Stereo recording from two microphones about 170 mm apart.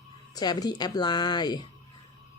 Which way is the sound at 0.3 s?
25° left (ahead or behind).